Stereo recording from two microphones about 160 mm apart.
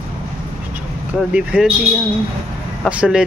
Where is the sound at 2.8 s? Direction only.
5° right (ahead or behind).